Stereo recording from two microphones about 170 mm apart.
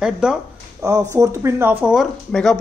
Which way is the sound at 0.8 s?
15° right (ahead or behind).